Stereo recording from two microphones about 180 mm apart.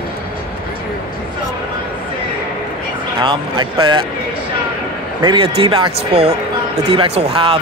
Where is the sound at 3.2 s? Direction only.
25° right (ahead or behind).